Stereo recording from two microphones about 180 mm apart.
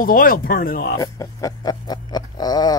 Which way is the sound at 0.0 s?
50° left (ahead or behind).